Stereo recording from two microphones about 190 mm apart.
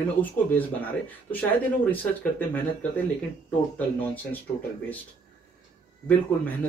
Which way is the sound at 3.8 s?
10° left (ahead or behind).